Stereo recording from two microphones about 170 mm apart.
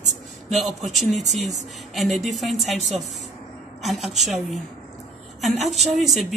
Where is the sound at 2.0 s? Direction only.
Centre (ahead or behind).